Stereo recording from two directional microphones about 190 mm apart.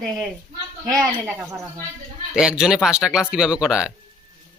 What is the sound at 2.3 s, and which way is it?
Speech, 5° right (ahead or behind).